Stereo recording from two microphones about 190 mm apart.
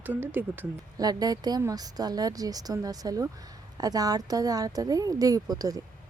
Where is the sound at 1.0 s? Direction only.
20° right (ahead or behind).